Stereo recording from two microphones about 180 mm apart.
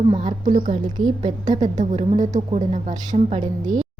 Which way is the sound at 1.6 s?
40° right (ahead or behind).